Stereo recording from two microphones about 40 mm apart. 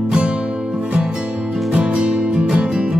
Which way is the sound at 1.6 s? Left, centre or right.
Right.